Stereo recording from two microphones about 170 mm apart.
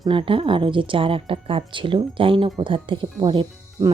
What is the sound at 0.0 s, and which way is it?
Speech, 30° right (ahead or behind).